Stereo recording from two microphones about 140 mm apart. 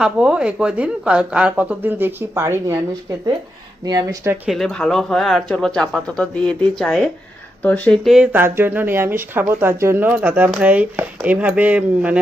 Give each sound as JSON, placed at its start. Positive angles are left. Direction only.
{"t": 0.0, "sound": "a woman's voice", "side_deg": -5}
{"t": 4.0, "sound": "a woman's voice", "side_deg": -20}
{"t": 4.4, "sound": "speech", "side_deg": 0}
{"t": 8.1, "sound": "a woman's voice", "side_deg": -10}